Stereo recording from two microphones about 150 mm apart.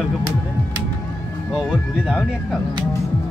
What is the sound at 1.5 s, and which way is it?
Speech, centre (ahead or behind).